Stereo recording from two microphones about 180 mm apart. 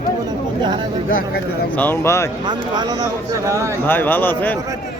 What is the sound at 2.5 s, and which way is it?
Speech, 25° right (ahead or behind).